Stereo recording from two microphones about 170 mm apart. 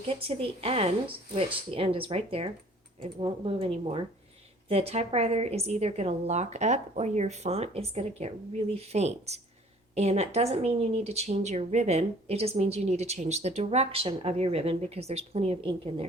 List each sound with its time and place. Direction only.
0.1 s speech: 35° right (ahead or behind)